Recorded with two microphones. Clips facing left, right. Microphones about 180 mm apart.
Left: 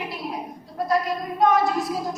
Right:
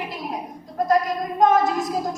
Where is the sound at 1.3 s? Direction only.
45° right (ahead or behind).